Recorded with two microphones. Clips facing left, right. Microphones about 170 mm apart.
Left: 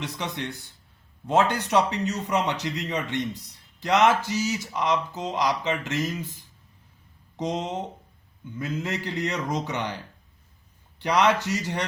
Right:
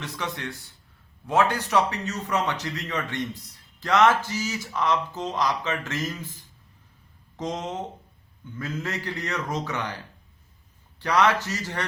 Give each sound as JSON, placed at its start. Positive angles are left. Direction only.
{"t": 0.0, "sound": "speech", "side_deg": 20}
{"t": 7.3, "sound": "speech", "side_deg": 15}
{"t": 11.0, "sound": "speech", "side_deg": 15}